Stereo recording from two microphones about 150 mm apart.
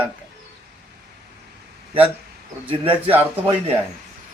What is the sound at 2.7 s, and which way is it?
Speech, 35° right (ahead or behind).